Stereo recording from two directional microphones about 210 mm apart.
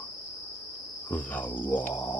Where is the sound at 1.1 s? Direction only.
10° left (ahead or behind).